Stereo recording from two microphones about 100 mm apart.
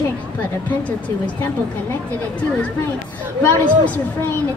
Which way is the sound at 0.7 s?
15° left (ahead or behind).